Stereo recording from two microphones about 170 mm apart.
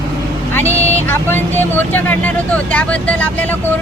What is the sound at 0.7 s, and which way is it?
Vehicle, 40° left (ahead or behind).